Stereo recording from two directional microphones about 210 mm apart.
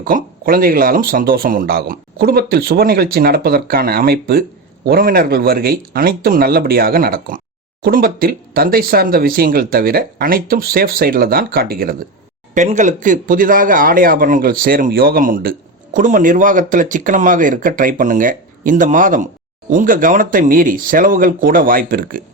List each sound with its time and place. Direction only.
0.0 s speech: 45° right (ahead or behind)